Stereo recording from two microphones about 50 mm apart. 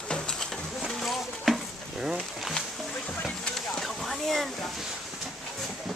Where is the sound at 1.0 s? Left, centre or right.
Centre.